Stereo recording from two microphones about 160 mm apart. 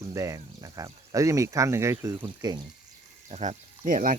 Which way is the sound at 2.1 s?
30° right (ahead or behind).